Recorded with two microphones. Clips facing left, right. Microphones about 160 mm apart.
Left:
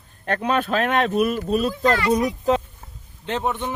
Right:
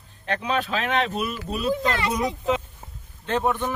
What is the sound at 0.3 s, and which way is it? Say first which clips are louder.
Speech: left 4 dB; 50° left (ahead or behind).